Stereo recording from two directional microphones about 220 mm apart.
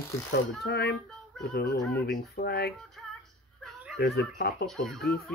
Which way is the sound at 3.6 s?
Centre (ahead or behind).